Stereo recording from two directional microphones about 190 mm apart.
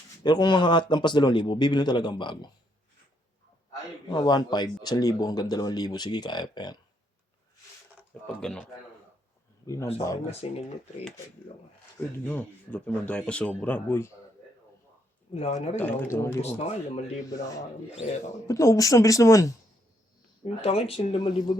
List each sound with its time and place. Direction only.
0.2 s a man's voice: 25° left (ahead or behind)
3.7 s a man's voice: 20° left (ahead or behind)
8.4 s a man's voice: 5° left (ahead or behind)
9.6 s speech: 15° left (ahead or behind)
10.4 s speech: 30° left (ahead or behind)
11.9 s speech: 10° left (ahead or behind)
15.3 s speech: 30° left (ahead or behind)
15.8 s speech: 10° left (ahead or behind)
16.4 s speech: 35° left (ahead or behind)
17.2 s a man's voice: 20° left (ahead or behind)
18.0 s speech: 40° left (ahead or behind)
18.4 s speech: 15° left (ahead or behind)
20.4 s speech: 35° left (ahead or behind)